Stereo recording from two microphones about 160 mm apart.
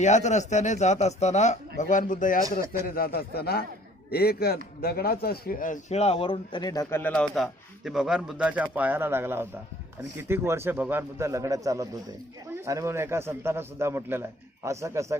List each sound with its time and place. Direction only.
0.0 s speech: 45° left (ahead or behind)
2.8 s a man's voice: 65° left (ahead or behind); by 7.0 s 25° left (ahead or behind)
7.0 s a man's voice: 5° left (ahead or behind); by 15.2 s 20° right (ahead or behind)